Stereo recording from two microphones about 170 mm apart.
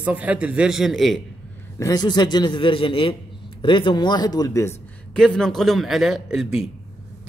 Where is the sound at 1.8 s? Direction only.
20° left (ahead or behind).